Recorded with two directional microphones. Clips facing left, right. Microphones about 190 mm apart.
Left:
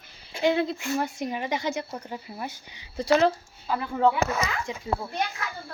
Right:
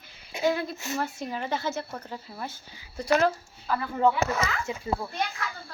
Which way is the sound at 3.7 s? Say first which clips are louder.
Left 1 dB; 20° left (ahead or behind).